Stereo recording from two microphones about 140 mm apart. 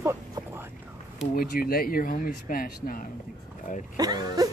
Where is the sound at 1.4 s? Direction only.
90° left.